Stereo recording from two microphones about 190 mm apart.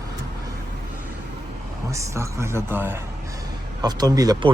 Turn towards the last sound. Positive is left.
turn(degrees=-20)  # may be behind; listen again after turning